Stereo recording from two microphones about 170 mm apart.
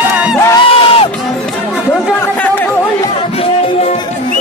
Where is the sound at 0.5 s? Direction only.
35° left (ahead or behind).